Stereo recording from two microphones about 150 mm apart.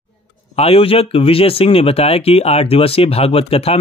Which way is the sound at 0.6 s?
40° left (ahead or behind).